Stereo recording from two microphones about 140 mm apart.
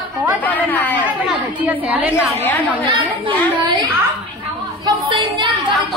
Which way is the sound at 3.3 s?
30° right (ahead or behind).